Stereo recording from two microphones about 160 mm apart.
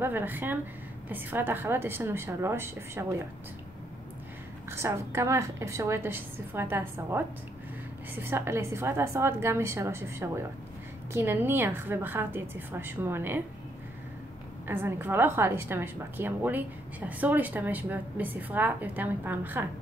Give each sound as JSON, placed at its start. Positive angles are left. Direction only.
{"t": 0.0, "sound": "a woman's voice", "side_deg": -10}
{"t": 4.6, "sound": "a woman's voice", "side_deg": -15}
{"t": 14.7, "sound": "a woman's voice", "side_deg": -15}